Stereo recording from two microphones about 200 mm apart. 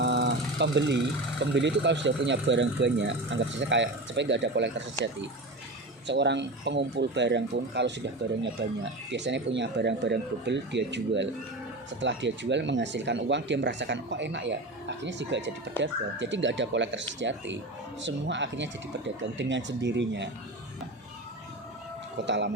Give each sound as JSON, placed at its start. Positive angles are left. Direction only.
{"t": 0.0, "sound": "vehicle", "side_deg": -60}
{"t": 1.4, "sound": "speech", "side_deg": -60}
{"t": 6.1, "sound": "speech", "side_deg": -60}
{"t": 22.3, "sound": "speech", "side_deg": -60}